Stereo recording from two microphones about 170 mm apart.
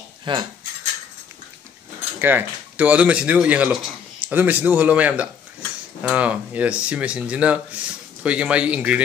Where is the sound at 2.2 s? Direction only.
10° right (ahead or behind).